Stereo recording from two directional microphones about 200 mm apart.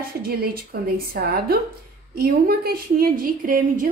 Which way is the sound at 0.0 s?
50° right (ahead or behind).